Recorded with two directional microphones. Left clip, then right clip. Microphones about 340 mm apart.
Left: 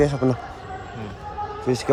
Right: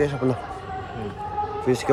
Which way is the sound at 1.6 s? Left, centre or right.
Centre.